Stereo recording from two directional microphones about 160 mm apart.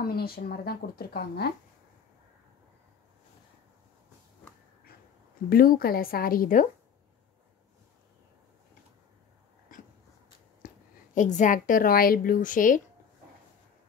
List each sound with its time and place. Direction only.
0.0 s speech: 75° left (ahead or behind)
5.5 s a woman's voice: 65° left (ahead or behind)
10.6 s a sound: 60° left (ahead or behind)
11.1 s a woman's voice: 50° left (ahead or behind)